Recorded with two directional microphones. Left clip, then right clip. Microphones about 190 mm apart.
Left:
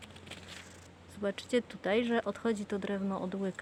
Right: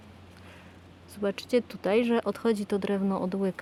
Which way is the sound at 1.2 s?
35° right (ahead or behind).